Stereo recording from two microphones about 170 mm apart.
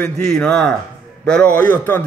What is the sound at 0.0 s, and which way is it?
A man's voice, 5° left (ahead or behind).